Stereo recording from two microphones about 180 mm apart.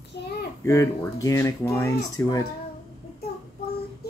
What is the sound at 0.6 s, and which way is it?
Speech, 15° left (ahead or behind).